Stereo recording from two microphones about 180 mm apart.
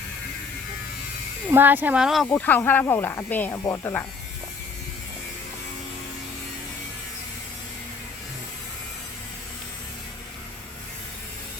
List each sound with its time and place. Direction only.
1.5 s speech: 10° right (ahead or behind)
2.2 s speech: 10° left (ahead or behind)